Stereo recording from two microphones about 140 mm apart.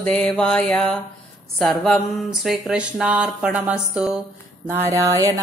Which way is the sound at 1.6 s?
Centre (ahead or behind).